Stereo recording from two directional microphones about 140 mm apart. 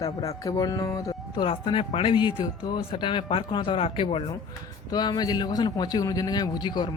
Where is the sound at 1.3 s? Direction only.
35° left (ahead or behind).